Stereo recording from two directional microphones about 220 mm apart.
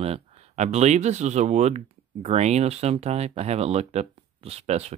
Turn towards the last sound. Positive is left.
turn(degrees=-30)  # may be behind; listen again after turning